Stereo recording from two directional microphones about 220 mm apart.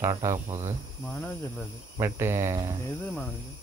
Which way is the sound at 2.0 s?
10° right (ahead or behind).